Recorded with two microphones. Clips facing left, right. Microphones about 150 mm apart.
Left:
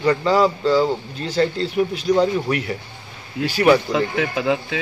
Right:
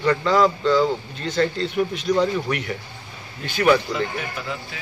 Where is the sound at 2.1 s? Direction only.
30° left (ahead or behind).